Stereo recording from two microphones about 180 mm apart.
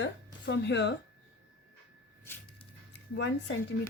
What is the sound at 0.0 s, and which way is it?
Speech, 75° left (ahead or behind).